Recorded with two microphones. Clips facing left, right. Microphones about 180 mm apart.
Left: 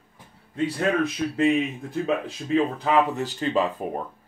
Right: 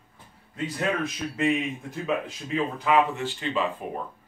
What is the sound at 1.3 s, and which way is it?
Speech, 30° left (ahead or behind).